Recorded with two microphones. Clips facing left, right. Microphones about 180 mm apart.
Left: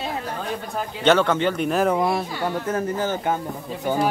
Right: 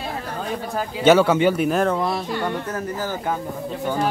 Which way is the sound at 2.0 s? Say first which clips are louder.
Left 1 dB; 15° left (ahead or behind).